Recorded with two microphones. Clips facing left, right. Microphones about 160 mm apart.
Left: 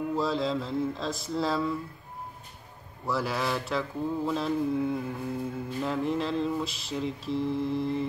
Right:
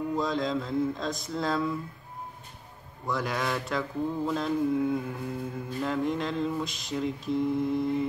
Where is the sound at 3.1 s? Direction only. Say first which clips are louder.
Left 1 dB; 5° left (ahead or behind).